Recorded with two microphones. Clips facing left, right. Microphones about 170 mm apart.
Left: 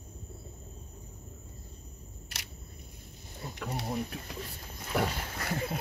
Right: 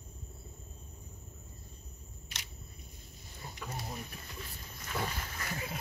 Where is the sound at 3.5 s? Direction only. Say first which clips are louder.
Left 7 dB; 65° left (ahead or behind).